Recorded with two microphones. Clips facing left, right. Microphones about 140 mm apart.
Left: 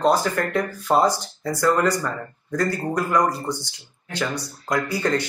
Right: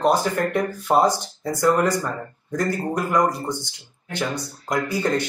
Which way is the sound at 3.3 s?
15° right (ahead or behind).